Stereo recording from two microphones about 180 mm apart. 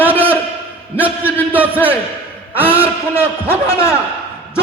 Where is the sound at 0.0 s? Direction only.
10° right (ahead or behind).